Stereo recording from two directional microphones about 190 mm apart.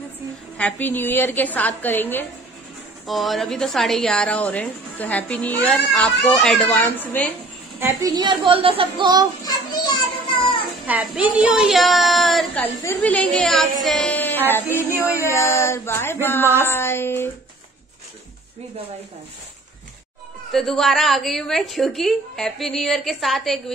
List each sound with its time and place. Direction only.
0.6 s a woman's voice: 10° left (ahead or behind)
3.1 s a woman's voice: centre (ahead or behind)
7.8 s a child's voice: 20° right (ahead or behind)
9.4 s children playing: 20° left (ahead or behind)
10.9 s a woman's voice: 10° right (ahead or behind)
13.8 s music: 5° left (ahead or behind)
15.1 s a woman's voice: 15° left (ahead or behind)
20.5 s a woman's voice: centre (ahead or behind)